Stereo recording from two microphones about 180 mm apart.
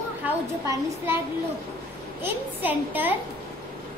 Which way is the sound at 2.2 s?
10° right (ahead or behind).